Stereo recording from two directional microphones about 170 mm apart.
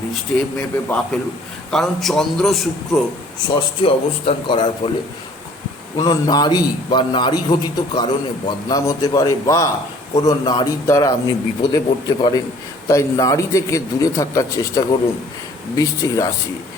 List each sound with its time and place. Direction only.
0.1 s a man's voice: 10° left (ahead or behind)
3.5 s a man's voice: 30° left (ahead or behind)
6.0 s a man's voice: 25° left (ahead or behind)